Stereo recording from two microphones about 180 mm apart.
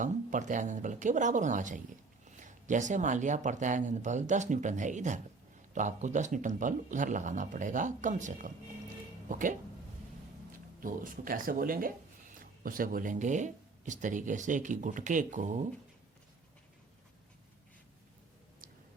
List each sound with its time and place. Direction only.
0.0 s speech: 45° right (ahead or behind)
10.8 s speech: 50° right (ahead or behind)